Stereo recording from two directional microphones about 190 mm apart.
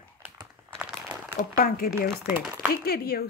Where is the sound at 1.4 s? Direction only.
50° left (ahead or behind).